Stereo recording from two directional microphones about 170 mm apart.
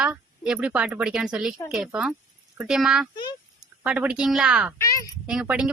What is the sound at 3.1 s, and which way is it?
Speech, 25° left (ahead or behind).